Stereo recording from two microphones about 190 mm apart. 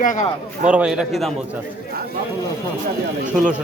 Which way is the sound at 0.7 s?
5° right (ahead or behind).